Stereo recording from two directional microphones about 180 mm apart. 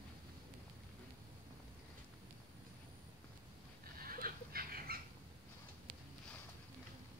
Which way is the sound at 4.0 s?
55° right (ahead or behind).